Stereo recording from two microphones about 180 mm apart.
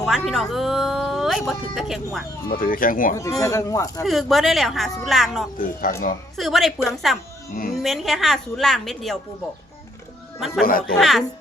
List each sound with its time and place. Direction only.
0.0 s speech: centre (ahead or behind)
2.5 s speech: 50° left (ahead or behind)
3.4 s speech: 15° left (ahead or behind)
4.0 s speech: centre (ahead or behind)
5.5 s speech: 50° left (ahead or behind)
6.3 s a woman's voice: centre (ahead or behind)
10.6 s speech: 55° left (ahead or behind)
10.9 s speech: centre (ahead or behind)